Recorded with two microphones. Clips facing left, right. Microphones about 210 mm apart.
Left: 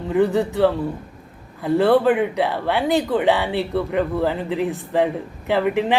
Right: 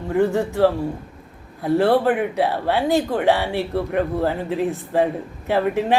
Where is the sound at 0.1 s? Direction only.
15° left (ahead or behind).